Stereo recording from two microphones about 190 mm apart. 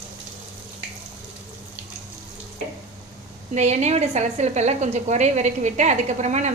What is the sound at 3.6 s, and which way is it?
A woman's voice, 35° right (ahead or behind).